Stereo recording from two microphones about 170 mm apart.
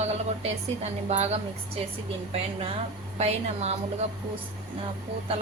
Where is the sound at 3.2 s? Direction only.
40° right (ahead or behind).